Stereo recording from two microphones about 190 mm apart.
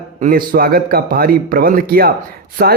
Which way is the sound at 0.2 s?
50° right (ahead or behind).